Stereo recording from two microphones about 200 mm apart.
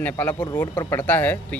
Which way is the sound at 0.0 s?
10° left (ahead or behind).